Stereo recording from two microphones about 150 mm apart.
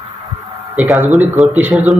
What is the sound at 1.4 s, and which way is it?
Speech, centre (ahead or behind).